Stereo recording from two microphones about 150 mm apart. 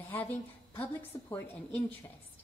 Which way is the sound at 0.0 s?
10° left (ahead or behind).